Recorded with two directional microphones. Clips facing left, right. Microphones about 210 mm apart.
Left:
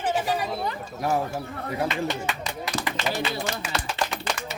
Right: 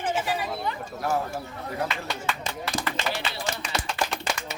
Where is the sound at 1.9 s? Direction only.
20° left (ahead or behind).